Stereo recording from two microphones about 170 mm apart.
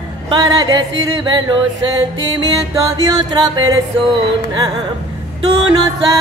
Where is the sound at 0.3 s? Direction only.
25° right (ahead or behind).